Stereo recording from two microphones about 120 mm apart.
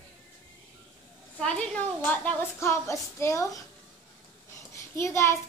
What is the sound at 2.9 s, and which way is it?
Speech, 25° left (ahead or behind).